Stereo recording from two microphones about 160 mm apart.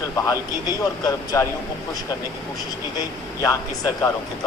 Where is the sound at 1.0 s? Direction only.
25° left (ahead or behind).